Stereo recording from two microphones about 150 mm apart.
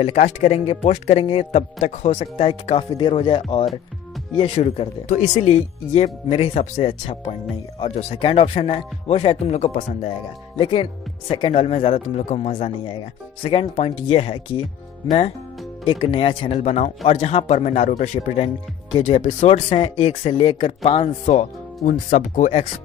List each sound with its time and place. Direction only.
0.0 s speech: 45° left (ahead or behind)
10.6 s speech: 35° left (ahead or behind)
15.8 s speech: 35° left (ahead or behind); by 22.7 s 50° left (ahead or behind)